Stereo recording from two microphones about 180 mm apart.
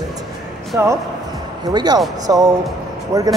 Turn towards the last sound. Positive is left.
turn(degrees=-20)  # may be behind; listen again after turning